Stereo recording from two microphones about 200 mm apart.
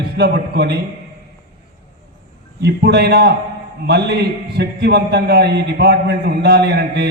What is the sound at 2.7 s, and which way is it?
A man's voice, 55° right (ahead or behind).